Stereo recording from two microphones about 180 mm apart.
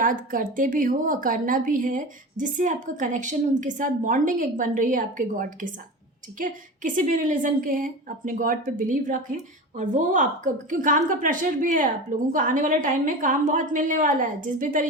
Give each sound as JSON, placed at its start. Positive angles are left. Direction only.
{"t": 0.0, "sound": "a woman's voice", "side_deg": -50}